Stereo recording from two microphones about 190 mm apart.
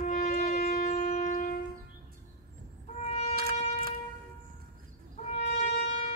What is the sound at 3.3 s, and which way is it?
Shofar, 55° right (ahead or behind).